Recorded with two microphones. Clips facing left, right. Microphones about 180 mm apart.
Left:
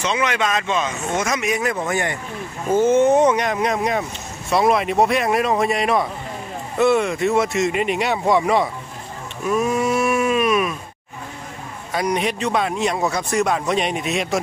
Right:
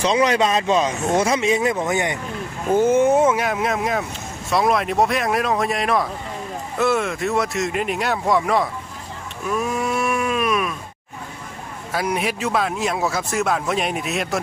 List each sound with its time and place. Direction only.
0.0 s a man's voice: 35° right (ahead or behind); by 8.6 s centre (ahead or behind)
9.5 s a sound: centre (ahead or behind)
11.9 s a man's voice: 5° right (ahead or behind)